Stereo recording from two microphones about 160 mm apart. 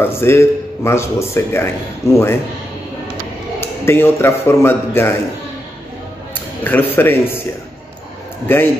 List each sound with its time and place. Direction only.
0.0 s a man's voice: 15° left (ahead or behind)
3.6 s a man's voice: 15° left (ahead or behind)
6.6 s a man's voice: 10° left (ahead or behind)
8.5 s a man's voice: 15° left (ahead or behind)